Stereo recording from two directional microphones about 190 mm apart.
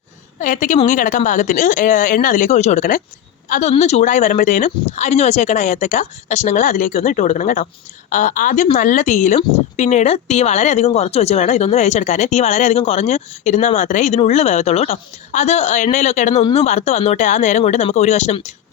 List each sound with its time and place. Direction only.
0.3 s a woman's voice: 45° left (ahead or behind)